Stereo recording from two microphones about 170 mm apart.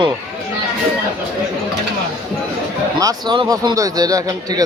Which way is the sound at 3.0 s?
20° right (ahead or behind).